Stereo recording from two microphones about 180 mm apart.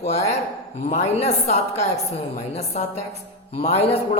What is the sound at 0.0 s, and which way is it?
Speech, 35° left (ahead or behind).